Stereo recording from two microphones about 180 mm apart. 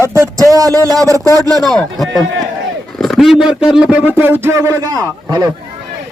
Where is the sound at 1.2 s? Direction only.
20° left (ahead or behind).